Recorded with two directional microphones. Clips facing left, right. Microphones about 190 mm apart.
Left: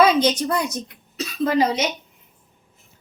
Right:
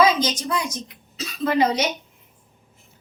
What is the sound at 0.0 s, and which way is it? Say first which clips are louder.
A woman's voice: left 3 dB; 65° left (ahead or behind).